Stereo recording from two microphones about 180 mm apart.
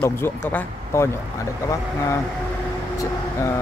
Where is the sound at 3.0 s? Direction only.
15° left (ahead or behind).